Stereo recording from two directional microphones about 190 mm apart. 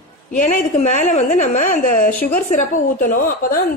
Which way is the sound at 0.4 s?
45° left (ahead or behind).